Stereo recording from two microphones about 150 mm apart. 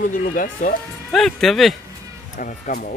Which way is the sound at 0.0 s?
60° left (ahead or behind).